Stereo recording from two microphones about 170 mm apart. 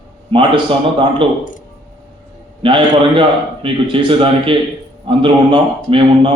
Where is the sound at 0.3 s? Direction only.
30° right (ahead or behind).